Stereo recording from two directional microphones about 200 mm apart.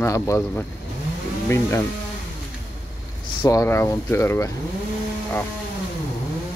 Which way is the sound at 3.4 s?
15° left (ahead or behind).